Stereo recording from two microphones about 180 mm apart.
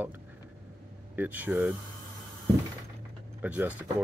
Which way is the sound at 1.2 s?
10° right (ahead or behind).